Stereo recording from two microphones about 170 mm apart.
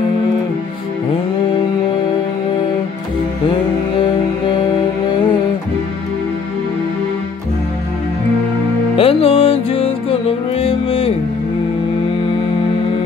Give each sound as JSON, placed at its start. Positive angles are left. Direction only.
{"t": 8.9, "sound": "music", "side_deg": 35}